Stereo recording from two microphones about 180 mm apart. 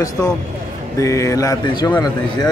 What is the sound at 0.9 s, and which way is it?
Speech, 15° left (ahead or behind).